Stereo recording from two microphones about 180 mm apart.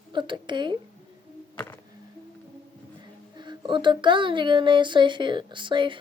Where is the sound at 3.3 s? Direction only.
25° right (ahead or behind).